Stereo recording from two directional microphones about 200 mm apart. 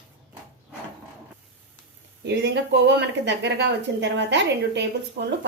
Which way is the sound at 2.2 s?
60° right (ahead or behind).